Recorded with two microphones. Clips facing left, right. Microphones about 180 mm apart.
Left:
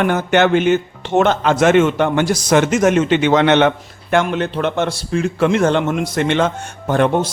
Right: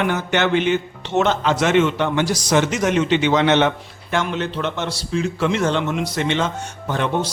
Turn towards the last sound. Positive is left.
turn(degrees=50)  # may be behind; listen again after turning